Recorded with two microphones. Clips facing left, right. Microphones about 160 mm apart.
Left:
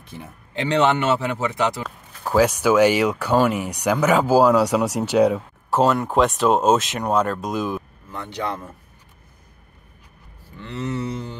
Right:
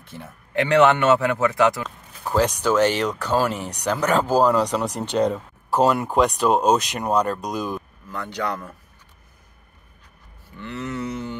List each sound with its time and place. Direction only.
0.0 s speech: 15° left (ahead or behind)
0.6 s a man's voice: 25° left (ahead or behind)
2.2 s speech: 5° left (ahead or behind)
8.1 s a man's voice: 25° left (ahead or behind)
10.5 s a sound: 30° left (ahead or behind)